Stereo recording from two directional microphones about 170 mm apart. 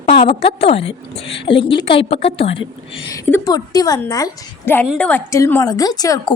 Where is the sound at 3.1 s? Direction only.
15° left (ahead or behind).